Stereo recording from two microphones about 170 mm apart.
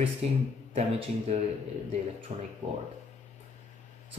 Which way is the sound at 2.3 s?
35° right (ahead or behind).